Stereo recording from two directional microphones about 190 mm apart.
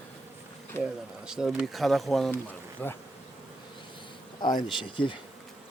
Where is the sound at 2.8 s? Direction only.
10° left (ahead or behind).